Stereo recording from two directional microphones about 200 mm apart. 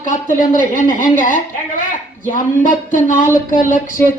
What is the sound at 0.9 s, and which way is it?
Speech, 40° left (ahead or behind).